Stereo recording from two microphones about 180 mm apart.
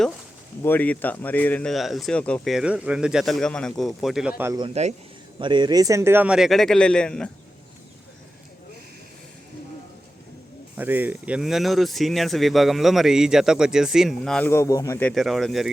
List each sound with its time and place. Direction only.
0.6 s speech: 10° left (ahead or behind); by 4.5 s 10° right (ahead or behind)
4.7 s a man's voice: 40° right (ahead or behind)
5.4 s speech: 25° right (ahead or behind); by 7.3 s 5° left (ahead or behind)
10.8 s speech: 10° right (ahead or behind); by 15.1 s 15° left (ahead or behind)
15.1 s speech: centre (ahead or behind)